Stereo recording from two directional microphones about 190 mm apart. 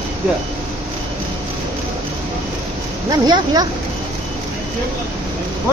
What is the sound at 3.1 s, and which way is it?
Speech, 20° right (ahead or behind).